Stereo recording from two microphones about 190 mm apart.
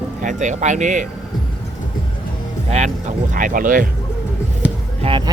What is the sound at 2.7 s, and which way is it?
Speech, 35° right (ahead or behind).